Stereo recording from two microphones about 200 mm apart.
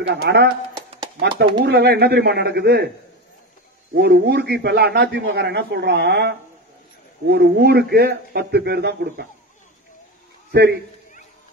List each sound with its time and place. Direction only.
0.1 s a man's voice: 55° right (ahead or behind)
1.6 s a man's voice: 55° right (ahead or behind)
3.9 s a man's voice: 55° right (ahead or behind)
10.5 s a man's voice: 55° right (ahead or behind)